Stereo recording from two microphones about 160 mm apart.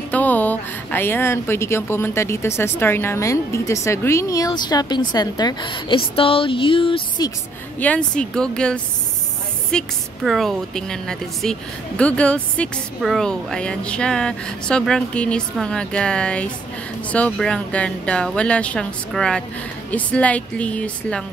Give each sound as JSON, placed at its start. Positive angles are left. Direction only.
{"t": 0.1, "sound": "speech", "side_deg": 10}
{"t": 7.8, "sound": "a woman's voice", "side_deg": 10}